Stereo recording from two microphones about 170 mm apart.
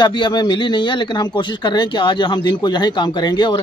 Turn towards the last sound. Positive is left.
turn(degrees=25)  # may be behind; listen again after turning